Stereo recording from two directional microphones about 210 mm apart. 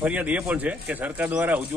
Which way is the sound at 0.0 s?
5° right (ahead or behind).